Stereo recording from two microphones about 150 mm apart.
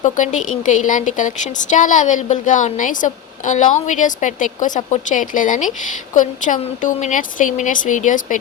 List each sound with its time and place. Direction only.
0.0 s a woman's voice: 55° left (ahead or behind)